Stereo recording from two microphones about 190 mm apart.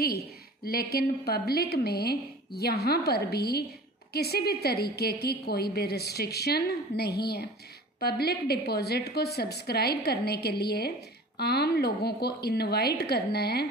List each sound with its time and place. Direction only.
0.9 s a woman's voice: 55° left (ahead or behind)